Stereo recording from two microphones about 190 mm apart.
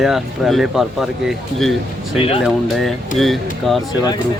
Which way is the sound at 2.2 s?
30° left (ahead or behind).